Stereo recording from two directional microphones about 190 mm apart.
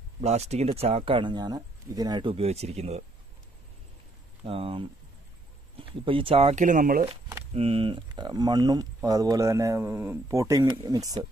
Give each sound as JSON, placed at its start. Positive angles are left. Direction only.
{"t": 0.2, "sound": "speech", "side_deg": -35}
{"t": 4.5, "sound": "speech", "side_deg": -30}
{"t": 7.5, "sound": "speech", "side_deg": -30}